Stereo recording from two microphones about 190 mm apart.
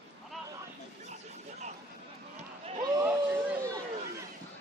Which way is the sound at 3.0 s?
10° right (ahead or behind).